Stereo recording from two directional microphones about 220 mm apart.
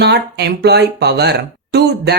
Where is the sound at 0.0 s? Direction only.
50° right (ahead or behind).